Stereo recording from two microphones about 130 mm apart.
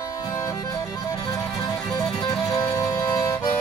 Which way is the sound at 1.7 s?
5° left (ahead or behind).